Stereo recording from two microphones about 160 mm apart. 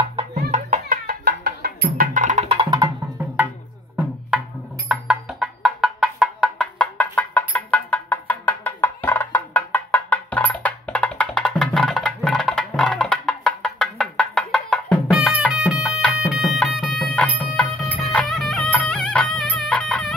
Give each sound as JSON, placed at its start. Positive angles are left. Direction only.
{"t": 0.5, "sound": "music", "side_deg": -60}
{"t": 2.1, "sound": "music", "side_deg": -50}
{"t": 4.3, "sound": "music", "side_deg": -5}